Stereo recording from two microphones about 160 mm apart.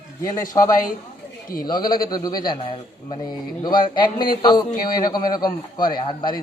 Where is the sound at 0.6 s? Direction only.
35° left (ahead or behind).